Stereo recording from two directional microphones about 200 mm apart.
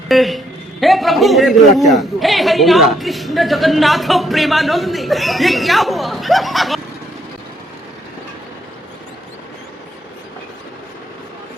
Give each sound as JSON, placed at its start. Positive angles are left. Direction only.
{"t": 0.1, "sound": "a man's voice", "side_deg": 0}